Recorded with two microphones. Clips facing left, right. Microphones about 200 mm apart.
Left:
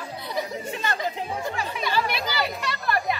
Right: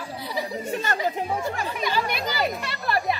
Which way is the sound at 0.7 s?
45° right (ahead or behind).